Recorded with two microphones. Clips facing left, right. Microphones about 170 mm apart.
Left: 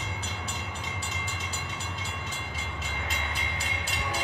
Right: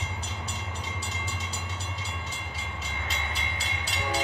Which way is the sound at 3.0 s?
50° left (ahead or behind).